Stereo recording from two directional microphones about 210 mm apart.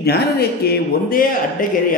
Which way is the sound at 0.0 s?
50° left (ahead or behind).